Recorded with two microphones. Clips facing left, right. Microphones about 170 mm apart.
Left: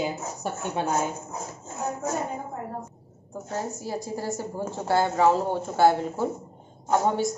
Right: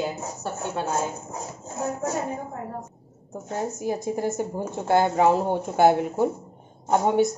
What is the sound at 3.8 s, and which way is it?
A woman's voice, 20° right (ahead or behind).